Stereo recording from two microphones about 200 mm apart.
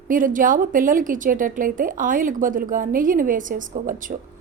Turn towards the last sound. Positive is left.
turn(degrees=-40)  # may be behind; listen again after turning